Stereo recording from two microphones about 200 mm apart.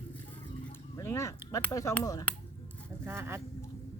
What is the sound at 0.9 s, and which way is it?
Speech, 15° left (ahead or behind).